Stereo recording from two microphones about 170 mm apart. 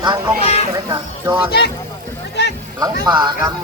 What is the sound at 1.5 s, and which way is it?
Speech, 70° left (ahead or behind).